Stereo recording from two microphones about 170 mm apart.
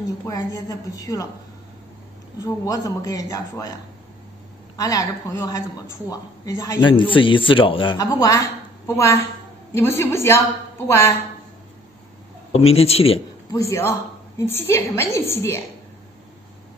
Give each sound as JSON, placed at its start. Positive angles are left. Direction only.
{"t": 0.3, "sound": "speech", "side_deg": 20}
{"t": 2.4, "sound": "speech", "side_deg": 20}
{"t": 4.7, "sound": "a woman's voice", "side_deg": 20}
{"t": 12.5, "sound": "speech", "side_deg": 35}
{"t": 13.5, "sound": "a woman's voice", "side_deg": 20}